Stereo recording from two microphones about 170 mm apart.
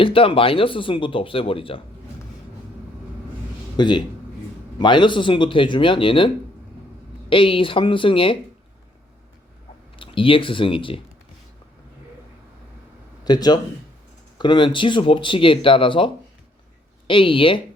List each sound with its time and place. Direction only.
0.0 s speech: 30° left (ahead or behind)
3.8 s speech: 25° left (ahead or behind)
10.0 s speech: 30° left (ahead or behind)
13.2 s speech: 25° left (ahead or behind)